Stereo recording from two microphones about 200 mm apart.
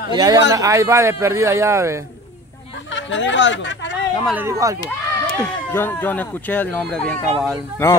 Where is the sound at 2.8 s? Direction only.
65° left (ahead or behind).